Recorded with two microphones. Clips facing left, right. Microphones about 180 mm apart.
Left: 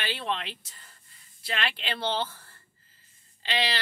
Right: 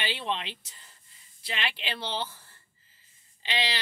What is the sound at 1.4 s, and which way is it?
Speech, 55° left (ahead or behind).